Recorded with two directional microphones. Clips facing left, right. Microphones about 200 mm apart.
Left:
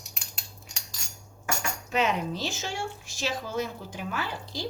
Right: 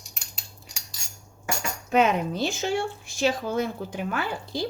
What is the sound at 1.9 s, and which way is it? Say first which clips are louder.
Speech: right 6 dB; 55° right (ahead or behind).